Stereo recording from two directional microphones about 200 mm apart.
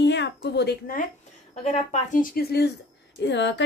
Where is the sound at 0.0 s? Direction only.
60° left (ahead or behind).